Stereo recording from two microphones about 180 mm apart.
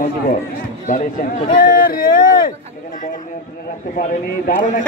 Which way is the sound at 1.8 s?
50° left (ahead or behind).